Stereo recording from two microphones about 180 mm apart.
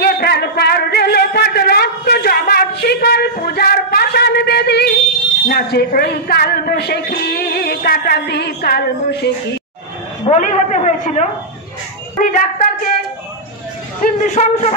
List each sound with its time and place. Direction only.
0.0 s a sound: 60° left (ahead or behind)
10.2 s a woman's voice: 40° left (ahead or behind)
14.0 s a man's voice: 40° left (ahead or behind)